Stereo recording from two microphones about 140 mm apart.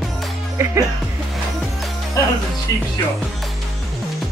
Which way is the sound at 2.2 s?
25° left (ahead or behind).